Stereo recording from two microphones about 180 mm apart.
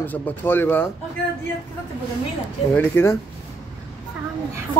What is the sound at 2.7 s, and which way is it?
Speech, 15° left (ahead or behind).